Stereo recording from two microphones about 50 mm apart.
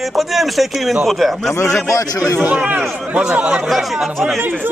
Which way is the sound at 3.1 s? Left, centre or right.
Right.